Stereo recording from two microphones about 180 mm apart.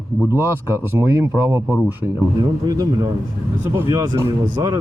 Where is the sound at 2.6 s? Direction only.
20° right (ahead or behind).